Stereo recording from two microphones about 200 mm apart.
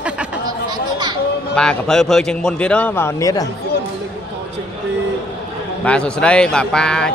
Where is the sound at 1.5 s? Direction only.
5° left (ahead or behind).